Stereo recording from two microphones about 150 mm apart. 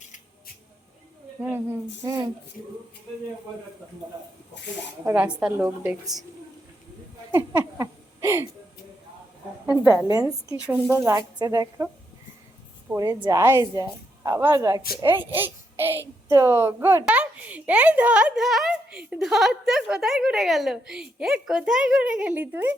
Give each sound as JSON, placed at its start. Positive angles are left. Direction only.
{"t": 0.0, "sound": "spray", "side_deg": 55}
{"t": 1.5, "sound": "a child's voice", "side_deg": -15}
{"t": 2.0, "sound": "a woman's voice", "side_deg": -25}
{"t": 5.0, "sound": "a child's voice", "side_deg": -10}
{"t": 7.3, "sound": "a sound", "side_deg": -20}
{"t": 10.1, "sound": "a woman's voice", "side_deg": -25}
{"t": 13.0, "sound": "a woman's voice", "side_deg": -25}